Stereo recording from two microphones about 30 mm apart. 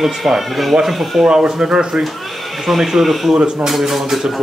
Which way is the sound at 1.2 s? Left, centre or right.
Right.